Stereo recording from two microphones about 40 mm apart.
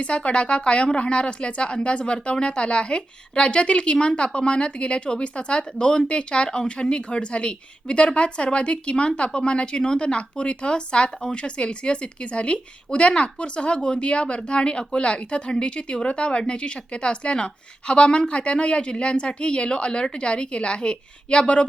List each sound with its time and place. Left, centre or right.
0.0 s a woman's voice: left